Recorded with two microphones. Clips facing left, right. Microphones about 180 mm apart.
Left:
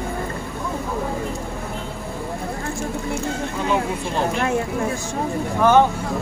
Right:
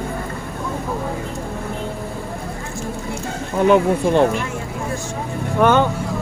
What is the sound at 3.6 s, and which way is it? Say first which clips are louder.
Speech: right 10 dB; 65° right (ahead or behind).